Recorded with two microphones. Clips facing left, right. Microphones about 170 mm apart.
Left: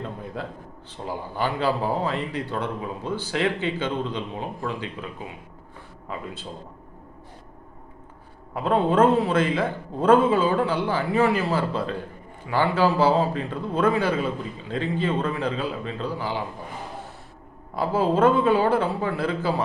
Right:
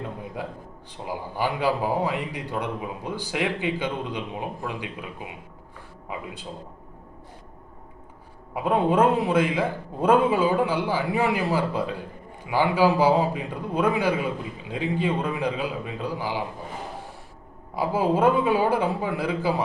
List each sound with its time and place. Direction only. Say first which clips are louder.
1.0 s a man's voice: even; 10° right (ahead or behind)
8.5 s a man's voice: left 1 dB; 10° right (ahead or behind)
17.7 s a man's voice: left 1 dB; 10° right (ahead or behind)